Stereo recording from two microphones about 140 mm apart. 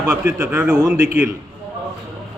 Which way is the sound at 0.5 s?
15° right (ahead or behind).